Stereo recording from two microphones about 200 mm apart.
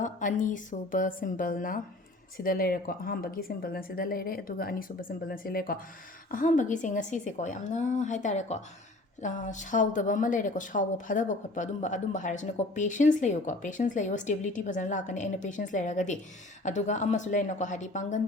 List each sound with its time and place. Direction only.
0.0 s a woman's voice: 40° left (ahead or behind)